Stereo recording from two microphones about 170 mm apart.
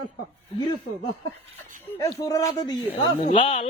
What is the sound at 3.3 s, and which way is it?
Speech, 30° left (ahead or behind).